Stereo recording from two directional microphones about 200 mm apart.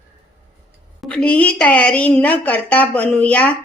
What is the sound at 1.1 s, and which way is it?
A woman's voice, 5° left (ahead or behind).